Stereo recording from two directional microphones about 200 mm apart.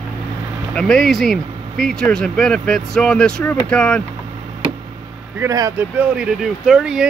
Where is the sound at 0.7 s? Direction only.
5° left (ahead or behind).